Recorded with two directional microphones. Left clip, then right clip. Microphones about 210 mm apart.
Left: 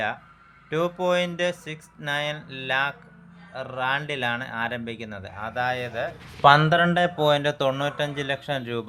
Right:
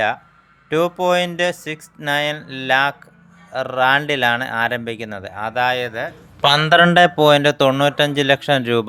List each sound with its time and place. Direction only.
0.7 s speech: 30° right (ahead or behind)